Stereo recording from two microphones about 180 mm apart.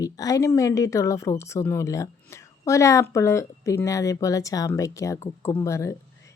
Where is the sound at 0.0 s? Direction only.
20° left (ahead or behind).